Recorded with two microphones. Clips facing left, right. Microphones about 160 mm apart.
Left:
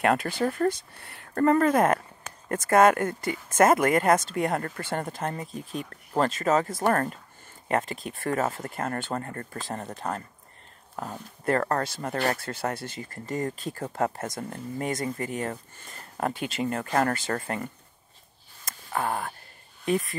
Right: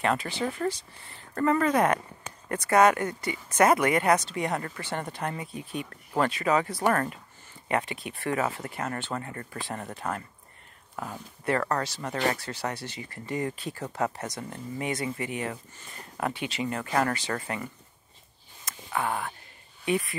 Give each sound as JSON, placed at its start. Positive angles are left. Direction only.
{"t": 0.0, "sound": "speech", "side_deg": 55}
{"t": 5.5, "sound": "speech", "side_deg": -5}
{"t": 6.1, "sound": "speech", "side_deg": 40}
{"t": 18.7, "sound": "a sound", "side_deg": 45}
{"t": 19.8, "sound": "speech", "side_deg": -5}